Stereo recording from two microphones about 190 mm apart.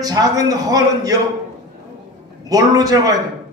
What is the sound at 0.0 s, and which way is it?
A man's voice, 20° right (ahead or behind).